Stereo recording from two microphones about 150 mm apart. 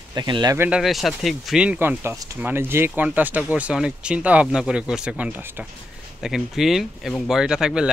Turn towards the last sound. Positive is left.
turn(degrees=-5)  # may be behind; listen again after turning